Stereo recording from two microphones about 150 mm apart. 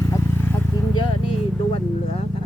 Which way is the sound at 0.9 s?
35° left (ahead or behind).